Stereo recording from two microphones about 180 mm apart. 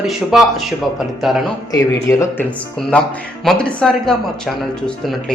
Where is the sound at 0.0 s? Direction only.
Centre (ahead or behind).